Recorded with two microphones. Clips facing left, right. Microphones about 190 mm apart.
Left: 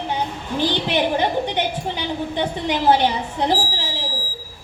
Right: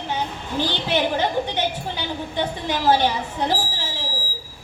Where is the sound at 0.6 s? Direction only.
15° left (ahead or behind).